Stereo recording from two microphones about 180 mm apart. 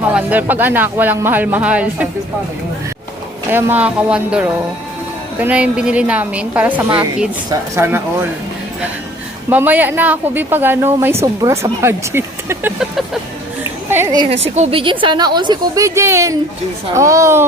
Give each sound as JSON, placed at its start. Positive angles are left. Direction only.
{"t": 0.1, "sound": "speech", "side_deg": -10}
{"t": 3.5, "sound": "speech", "side_deg": -10}
{"t": 9.5, "sound": "speech", "side_deg": -10}
{"t": 13.9, "sound": "a woman's voice", "side_deg": -15}
{"t": 14.4, "sound": "a woman's voice", "side_deg": -35}